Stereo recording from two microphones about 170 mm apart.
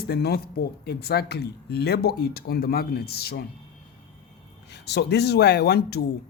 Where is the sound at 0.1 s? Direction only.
70° left (ahead or behind).